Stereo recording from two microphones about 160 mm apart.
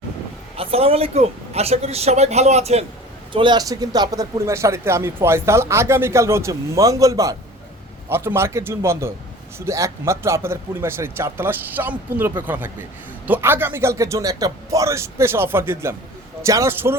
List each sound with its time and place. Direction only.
0.5 s speech: 35° right (ahead or behind)
3.3 s a man's voice: 30° right (ahead or behind)